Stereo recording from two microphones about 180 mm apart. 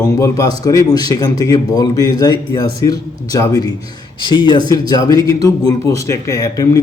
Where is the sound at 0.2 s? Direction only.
20° left (ahead or behind).